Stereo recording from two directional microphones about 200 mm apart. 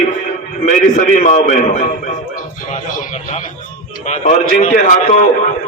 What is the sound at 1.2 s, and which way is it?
Speech, 35° left (ahead or behind).